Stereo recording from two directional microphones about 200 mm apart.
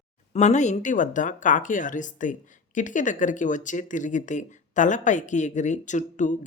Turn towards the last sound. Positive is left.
turn(degrees=40)  # may be behind; listen again after turning